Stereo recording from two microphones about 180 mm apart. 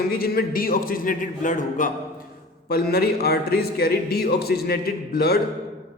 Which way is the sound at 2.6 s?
60° left (ahead or behind).